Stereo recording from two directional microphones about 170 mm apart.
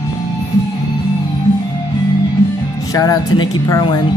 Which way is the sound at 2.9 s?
20° left (ahead or behind).